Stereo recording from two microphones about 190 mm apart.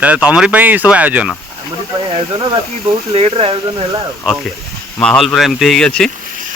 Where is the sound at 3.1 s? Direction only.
30° right (ahead or behind).